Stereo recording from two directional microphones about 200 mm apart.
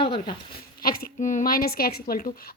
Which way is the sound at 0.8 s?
45° left (ahead or behind).